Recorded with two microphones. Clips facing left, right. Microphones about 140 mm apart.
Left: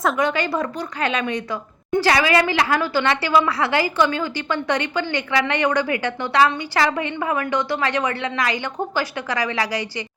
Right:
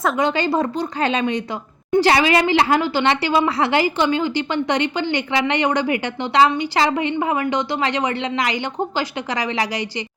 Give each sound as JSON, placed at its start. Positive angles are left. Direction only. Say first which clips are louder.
{"t": 0.2, "sound": "a woman's voice", "louder": "right 2 dB", "side_deg": -25}